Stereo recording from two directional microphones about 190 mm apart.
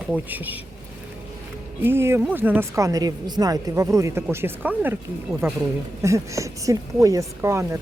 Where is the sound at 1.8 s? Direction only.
10° right (ahead or behind).